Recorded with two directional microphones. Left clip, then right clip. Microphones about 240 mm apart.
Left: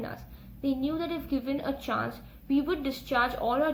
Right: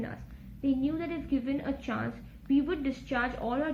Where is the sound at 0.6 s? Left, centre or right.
Left.